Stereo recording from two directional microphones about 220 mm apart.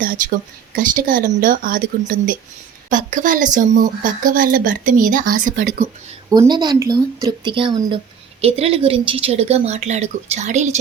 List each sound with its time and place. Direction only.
0.0 s speech: 40° right (ahead or behind)
6.3 s speech: 20° right (ahead or behind)